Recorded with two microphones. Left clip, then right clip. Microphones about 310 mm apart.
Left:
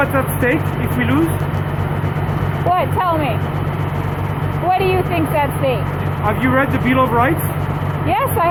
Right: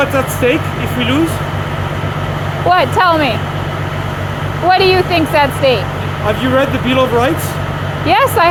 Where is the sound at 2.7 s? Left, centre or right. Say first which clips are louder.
Right 6 dB; right.